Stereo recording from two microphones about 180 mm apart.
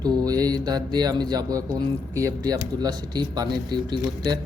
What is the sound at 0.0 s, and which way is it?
Speech, 20° right (ahead or behind).